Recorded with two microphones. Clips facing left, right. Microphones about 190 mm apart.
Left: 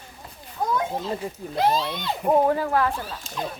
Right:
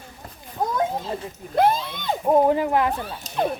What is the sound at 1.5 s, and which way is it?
Speech, 55° right (ahead or behind).